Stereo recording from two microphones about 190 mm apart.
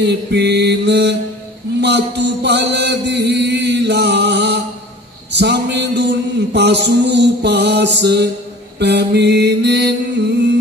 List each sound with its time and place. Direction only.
0.0 s mantra: 60° right (ahead or behind)
1.8 s music: 65° right (ahead or behind)
5.3 s mantra: 65° right (ahead or behind)